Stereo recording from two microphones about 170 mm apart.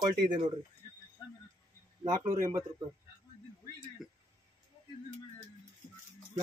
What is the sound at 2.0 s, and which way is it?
Speech, 25° right (ahead or behind).